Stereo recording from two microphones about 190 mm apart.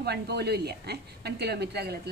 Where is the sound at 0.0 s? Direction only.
60° right (ahead or behind).